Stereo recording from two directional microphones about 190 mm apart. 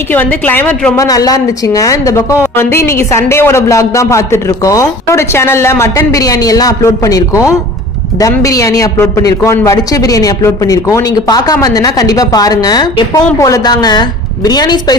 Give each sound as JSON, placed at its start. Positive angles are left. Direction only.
{"t": 0.1, "sound": "a woman's voice", "side_deg": 10}
{"t": 0.9, "sound": "a woman's voice", "side_deg": 20}